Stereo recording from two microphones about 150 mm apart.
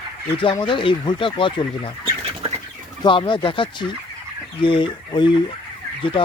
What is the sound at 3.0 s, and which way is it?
Speech, 30° left (ahead or behind).